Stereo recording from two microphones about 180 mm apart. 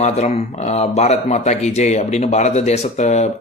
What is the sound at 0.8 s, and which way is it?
Speech, 35° left (ahead or behind).